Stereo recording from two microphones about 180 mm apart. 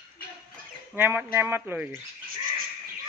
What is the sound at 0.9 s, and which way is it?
Speech, 10° right (ahead or behind).